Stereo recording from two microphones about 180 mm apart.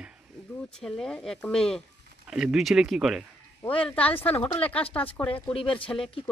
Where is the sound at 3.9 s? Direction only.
10° left (ahead or behind).